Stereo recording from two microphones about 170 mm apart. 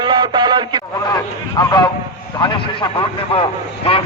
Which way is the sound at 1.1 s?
25° left (ahead or behind).